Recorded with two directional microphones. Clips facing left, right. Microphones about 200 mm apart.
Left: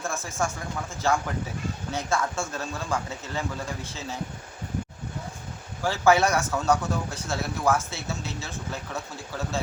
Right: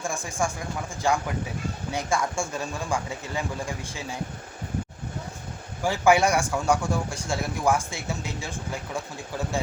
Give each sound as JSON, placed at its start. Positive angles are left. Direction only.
{"t": 0.0, "sound": "a man's voice", "side_deg": -15}
{"t": 5.8, "sound": "a man's voice", "side_deg": -15}